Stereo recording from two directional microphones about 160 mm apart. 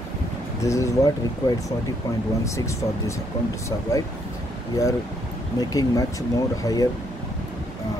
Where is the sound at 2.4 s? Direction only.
20° left (ahead or behind).